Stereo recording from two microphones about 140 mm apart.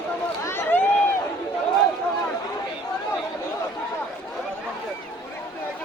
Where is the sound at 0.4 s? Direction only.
15° left (ahead or behind).